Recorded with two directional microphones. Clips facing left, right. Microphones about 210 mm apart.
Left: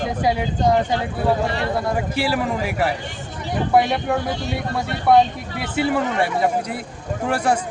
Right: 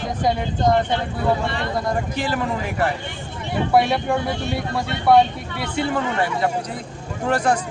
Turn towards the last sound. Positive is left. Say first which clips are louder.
# even
turn(degrees=10)  # may be behind; listen again after turning